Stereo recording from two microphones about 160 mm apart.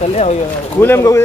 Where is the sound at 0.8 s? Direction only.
15° left (ahead or behind).